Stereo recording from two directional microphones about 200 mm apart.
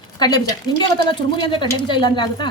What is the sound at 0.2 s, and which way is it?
A woman's voice, 20° left (ahead or behind).